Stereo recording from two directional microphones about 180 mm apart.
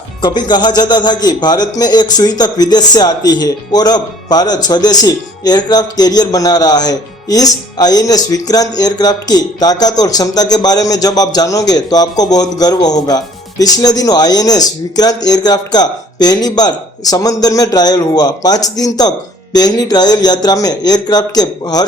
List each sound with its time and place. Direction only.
0.2 s speech: 25° left (ahead or behind)